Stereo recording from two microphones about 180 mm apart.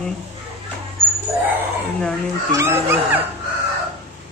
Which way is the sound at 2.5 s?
15° right (ahead or behind).